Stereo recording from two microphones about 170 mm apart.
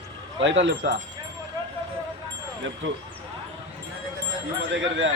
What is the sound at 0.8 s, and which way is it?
Wind chime, 90° right.